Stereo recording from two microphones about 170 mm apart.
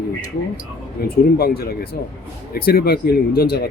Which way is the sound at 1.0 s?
65° left (ahead or behind).